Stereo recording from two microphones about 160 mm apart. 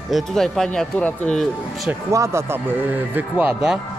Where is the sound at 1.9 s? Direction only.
20° right (ahead or behind).